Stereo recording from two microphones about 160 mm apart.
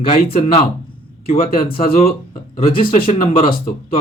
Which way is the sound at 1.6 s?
35° left (ahead or behind).